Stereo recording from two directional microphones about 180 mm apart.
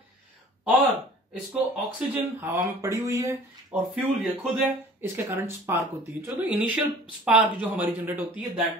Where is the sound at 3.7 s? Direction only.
5° right (ahead or behind).